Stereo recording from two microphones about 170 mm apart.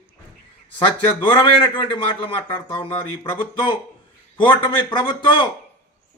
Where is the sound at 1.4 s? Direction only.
30° left (ahead or behind).